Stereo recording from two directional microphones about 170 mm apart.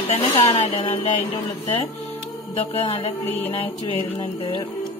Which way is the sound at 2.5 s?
35° left (ahead or behind).